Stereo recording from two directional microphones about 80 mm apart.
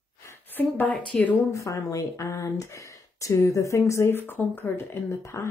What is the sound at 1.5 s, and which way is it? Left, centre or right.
Speech, left.